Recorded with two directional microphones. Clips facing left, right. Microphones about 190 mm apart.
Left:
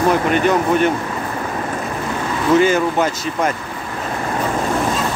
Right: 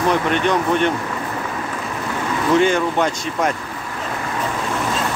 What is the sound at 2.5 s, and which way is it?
Speech, 5° left (ahead or behind).